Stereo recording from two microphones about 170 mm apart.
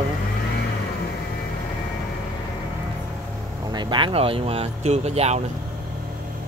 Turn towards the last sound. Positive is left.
turn(degrees=-40)  # may be behind; listen again after turning